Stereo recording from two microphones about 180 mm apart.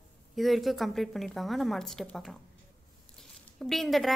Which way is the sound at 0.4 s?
Centre (ahead or behind).